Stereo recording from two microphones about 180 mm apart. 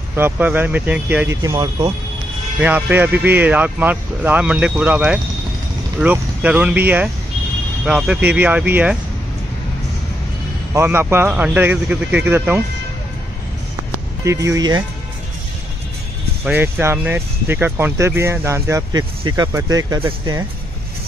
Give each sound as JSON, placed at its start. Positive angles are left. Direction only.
{"t": 0.1, "sound": "speech", "side_deg": -10}
{"t": 2.6, "sound": "speech", "side_deg": -10}
{"t": 10.7, "sound": "speech", "side_deg": -15}
{"t": 14.2, "sound": "speech", "side_deg": -15}
{"t": 16.4, "sound": "speech", "side_deg": -10}